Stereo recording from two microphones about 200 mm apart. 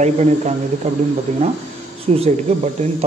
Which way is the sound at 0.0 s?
35° right (ahead or behind).